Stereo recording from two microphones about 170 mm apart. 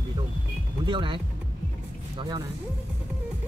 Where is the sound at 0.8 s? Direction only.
30° right (ahead or behind).